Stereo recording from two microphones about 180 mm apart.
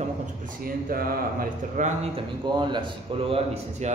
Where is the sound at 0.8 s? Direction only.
55° right (ahead or behind).